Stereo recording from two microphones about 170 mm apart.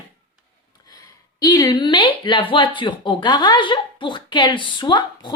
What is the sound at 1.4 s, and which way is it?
Speech, 20° left (ahead or behind).